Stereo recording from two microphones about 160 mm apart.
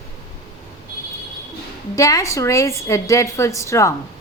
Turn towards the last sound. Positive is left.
turn(degrees=20)  # may be behind; listen again after turning